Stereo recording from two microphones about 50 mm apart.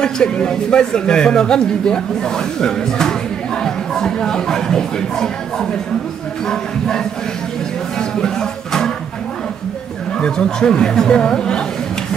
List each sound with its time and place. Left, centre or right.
0.0 s speech: centre
8.2 s music: centre
10.2 s speech: centre